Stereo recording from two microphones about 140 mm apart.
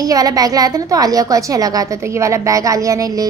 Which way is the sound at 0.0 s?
25° right (ahead or behind).